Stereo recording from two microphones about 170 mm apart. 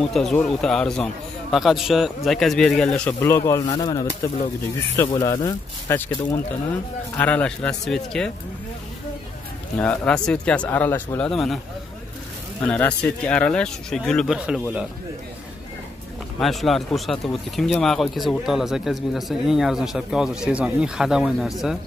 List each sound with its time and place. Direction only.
0.1 s a man's voice: 5° left (ahead or behind); by 5.9 s 25° left (ahead or behind)
5.9 s a man's voice: 10° left (ahead or behind)
9.8 s speech: 10° left (ahead or behind)
12.6 s a man's voice: 10° left (ahead or behind)
16.3 s a man's voice: centre (ahead or behind)